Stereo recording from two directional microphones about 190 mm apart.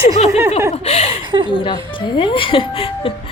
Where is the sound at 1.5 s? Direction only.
25° left (ahead or behind).